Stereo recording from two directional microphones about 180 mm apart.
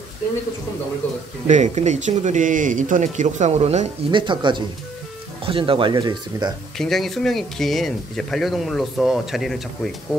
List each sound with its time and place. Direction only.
1.5 s speech: 40° right (ahead or behind); by 6.5 s 25° right (ahead or behind)
6.8 s speech: centre (ahead or behind)